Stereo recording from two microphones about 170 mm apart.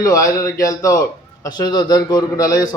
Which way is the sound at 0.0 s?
20° left (ahead or behind).